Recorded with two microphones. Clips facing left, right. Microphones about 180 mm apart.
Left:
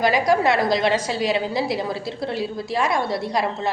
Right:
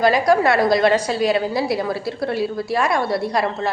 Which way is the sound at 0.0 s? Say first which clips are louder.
Right 3 dB; 20° left (ahead or behind).